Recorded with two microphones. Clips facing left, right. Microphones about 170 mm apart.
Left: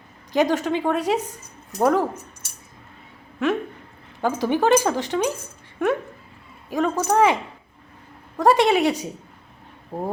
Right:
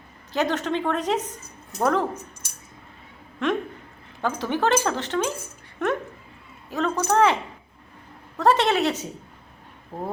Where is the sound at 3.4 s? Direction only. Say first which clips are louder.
Left 2 dB; 5° left (ahead or behind).